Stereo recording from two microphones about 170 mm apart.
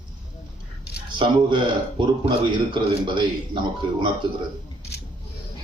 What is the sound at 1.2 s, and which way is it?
A man's voice, 30° right (ahead or behind).